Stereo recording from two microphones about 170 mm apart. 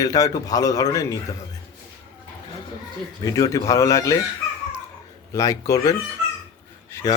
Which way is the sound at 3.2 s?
20° left (ahead or behind).